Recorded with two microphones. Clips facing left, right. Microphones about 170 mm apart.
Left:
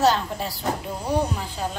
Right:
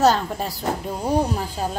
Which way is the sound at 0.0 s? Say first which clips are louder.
Right 2 dB; 45° right (ahead or behind).